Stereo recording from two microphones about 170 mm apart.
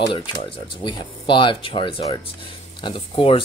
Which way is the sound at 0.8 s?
30° left (ahead or behind).